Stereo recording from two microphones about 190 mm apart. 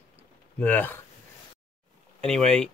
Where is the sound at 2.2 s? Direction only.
5° left (ahead or behind).